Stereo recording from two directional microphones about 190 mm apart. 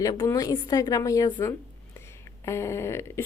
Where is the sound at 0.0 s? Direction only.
20° left (ahead or behind).